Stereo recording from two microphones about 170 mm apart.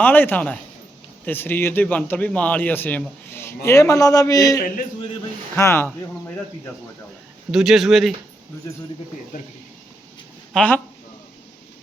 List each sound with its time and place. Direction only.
0.0 s a man's voice: 10° left (ahead or behind)
7.5 s speech: 5° right (ahead or behind)
10.5 s speech: 5° left (ahead or behind)